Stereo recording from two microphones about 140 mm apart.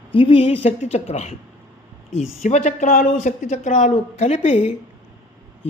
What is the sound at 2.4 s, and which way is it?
A woman's voice, 60° left (ahead or behind).